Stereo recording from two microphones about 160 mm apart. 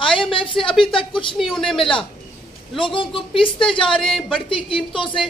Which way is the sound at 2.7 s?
30° left (ahead or behind).